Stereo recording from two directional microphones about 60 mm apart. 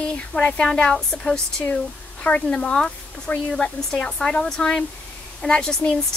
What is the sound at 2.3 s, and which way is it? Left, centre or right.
A woman's voice, left.